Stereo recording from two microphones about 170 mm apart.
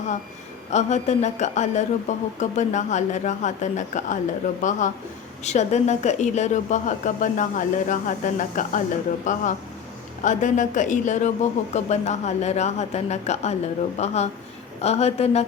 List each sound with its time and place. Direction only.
0.7 s speech: 45° left (ahead or behind)